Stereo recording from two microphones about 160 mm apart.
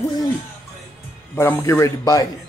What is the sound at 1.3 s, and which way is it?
Speech, 15° left (ahead or behind).